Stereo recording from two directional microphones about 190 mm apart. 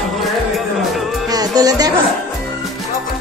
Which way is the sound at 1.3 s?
20° right (ahead or behind).